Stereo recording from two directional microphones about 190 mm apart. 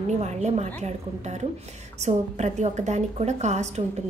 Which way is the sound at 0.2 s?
35° right (ahead or behind).